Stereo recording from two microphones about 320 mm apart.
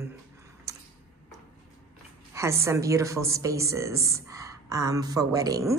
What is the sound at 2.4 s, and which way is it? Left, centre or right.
Speech, centre.